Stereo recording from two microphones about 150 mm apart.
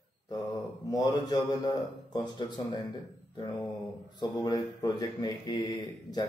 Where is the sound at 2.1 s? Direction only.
30° left (ahead or behind).